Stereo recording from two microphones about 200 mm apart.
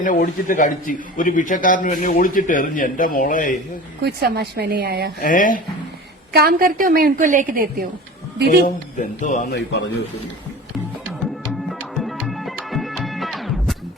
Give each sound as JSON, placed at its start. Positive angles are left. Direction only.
{"t": 0.0, "sound": "a man's voice", "side_deg": 40}
{"t": 4.0, "sound": "a woman's voice", "side_deg": -50}
{"t": 5.2, "sound": "a man's voice", "side_deg": 40}
{"t": 6.3, "sound": "a woman's voice", "side_deg": -50}
{"t": 8.6, "sound": "a man's voice", "side_deg": 40}
{"t": 9.5, "sound": "a man's voice", "side_deg": 60}
{"t": 11.7, "sound": "music", "side_deg": 0}